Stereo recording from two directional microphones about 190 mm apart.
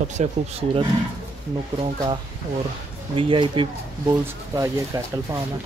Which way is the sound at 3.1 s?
30° right (ahead or behind).